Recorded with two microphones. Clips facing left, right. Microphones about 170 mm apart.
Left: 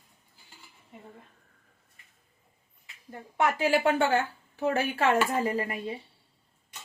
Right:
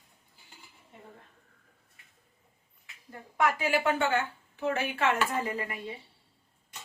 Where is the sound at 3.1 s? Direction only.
30° left (ahead or behind).